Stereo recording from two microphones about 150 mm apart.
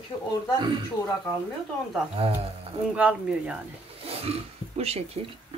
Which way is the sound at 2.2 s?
40° right (ahead or behind).